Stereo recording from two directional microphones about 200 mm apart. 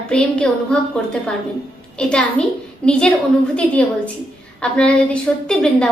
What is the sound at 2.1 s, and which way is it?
A woman's voice, 5° left (ahead or behind).